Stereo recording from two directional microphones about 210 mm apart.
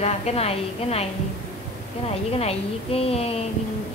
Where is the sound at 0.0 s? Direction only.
30° left (ahead or behind).